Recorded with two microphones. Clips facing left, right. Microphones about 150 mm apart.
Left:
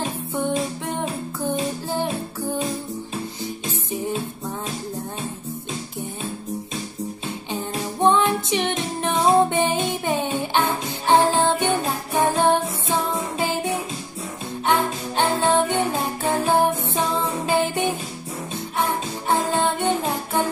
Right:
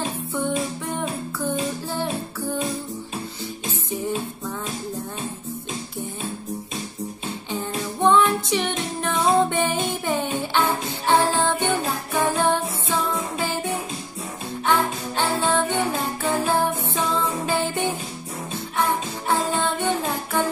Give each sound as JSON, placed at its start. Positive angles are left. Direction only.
{"t": 0.0, "sound": "music", "side_deg": 15}
{"t": 7.2, "sound": "music", "side_deg": 15}